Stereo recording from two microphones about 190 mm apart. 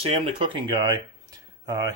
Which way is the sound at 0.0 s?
30° right (ahead or behind).